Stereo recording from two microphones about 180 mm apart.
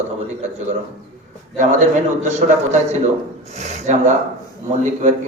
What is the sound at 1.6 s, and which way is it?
A man's voice, 40° right (ahead or behind).